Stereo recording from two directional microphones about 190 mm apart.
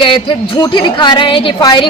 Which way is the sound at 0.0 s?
25° left (ahead or behind).